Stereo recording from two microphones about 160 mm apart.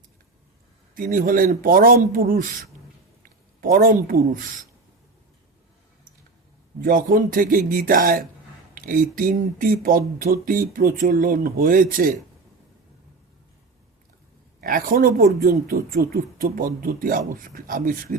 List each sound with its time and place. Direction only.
0.9 s speech: 60° right (ahead or behind)
6.8 s speech: 60° right (ahead or behind)
14.6 s speech: 60° right (ahead or behind)